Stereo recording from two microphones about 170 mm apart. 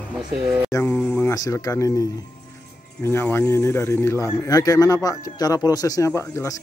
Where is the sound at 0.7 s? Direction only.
10° left (ahead or behind).